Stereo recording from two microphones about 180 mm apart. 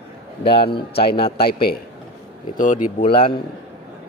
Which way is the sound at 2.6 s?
50° left (ahead or behind).